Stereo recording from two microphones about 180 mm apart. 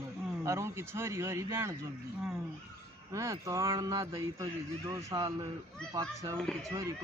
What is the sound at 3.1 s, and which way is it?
Speech, 15° right (ahead or behind).